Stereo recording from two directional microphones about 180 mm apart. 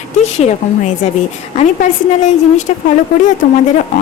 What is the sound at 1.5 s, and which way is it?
A woman's voice, 40° left (ahead or behind).